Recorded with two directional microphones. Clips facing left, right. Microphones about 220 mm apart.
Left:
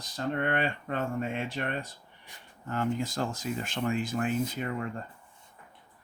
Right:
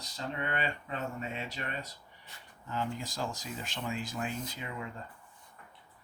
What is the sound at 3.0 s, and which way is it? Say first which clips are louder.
Speech: left 6 dB; 55° left (ahead or behind).